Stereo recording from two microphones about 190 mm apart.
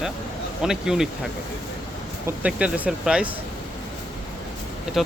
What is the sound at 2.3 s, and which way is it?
Speech, 5° right (ahead or behind).